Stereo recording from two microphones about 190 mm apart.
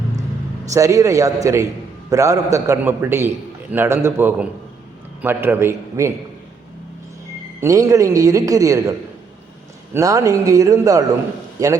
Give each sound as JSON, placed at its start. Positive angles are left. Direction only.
{"t": 0.6, "sound": "a man's voice", "side_deg": -15}
{"t": 7.6, "sound": "a man's voice", "side_deg": -15}